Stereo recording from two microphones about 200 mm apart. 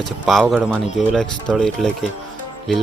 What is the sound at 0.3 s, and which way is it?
Speech, centre (ahead or behind).